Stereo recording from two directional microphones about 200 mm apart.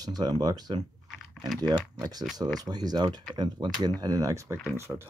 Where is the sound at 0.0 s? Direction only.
20° right (ahead or behind).